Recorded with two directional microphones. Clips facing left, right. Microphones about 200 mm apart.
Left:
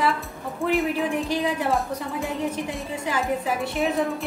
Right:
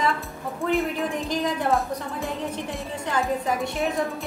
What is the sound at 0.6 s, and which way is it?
A woman's voice, centre (ahead or behind).